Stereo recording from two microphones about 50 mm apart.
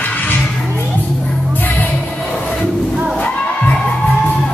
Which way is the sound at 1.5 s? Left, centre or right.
Left.